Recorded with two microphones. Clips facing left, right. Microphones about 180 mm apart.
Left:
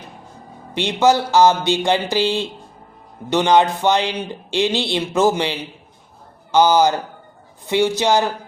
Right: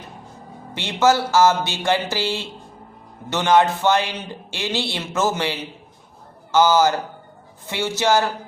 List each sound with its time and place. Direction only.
0.7 s speech: 15° left (ahead or behind)